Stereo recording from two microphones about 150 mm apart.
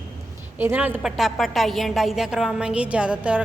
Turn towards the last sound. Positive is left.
turn(degrees=-10)  # may be behind; listen again after turning